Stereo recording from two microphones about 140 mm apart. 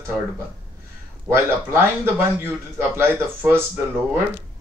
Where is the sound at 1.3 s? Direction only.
15° right (ahead or behind).